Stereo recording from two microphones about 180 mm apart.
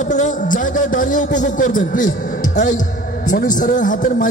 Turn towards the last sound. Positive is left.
turn(degrees=45)  # may be behind; listen again after turning